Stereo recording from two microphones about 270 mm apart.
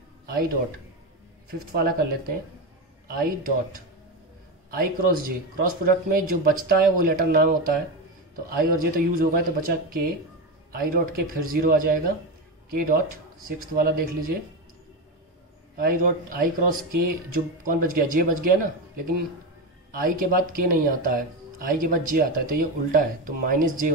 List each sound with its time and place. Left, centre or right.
1.5 s speech: right
15.8 s speech: right